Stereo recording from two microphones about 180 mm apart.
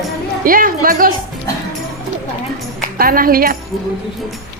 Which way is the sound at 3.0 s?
55° right (ahead or behind).